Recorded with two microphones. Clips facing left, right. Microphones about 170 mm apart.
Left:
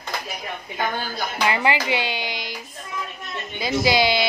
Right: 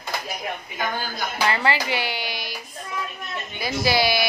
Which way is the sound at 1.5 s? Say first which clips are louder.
Left 3 dB; 15° left (ahead or behind).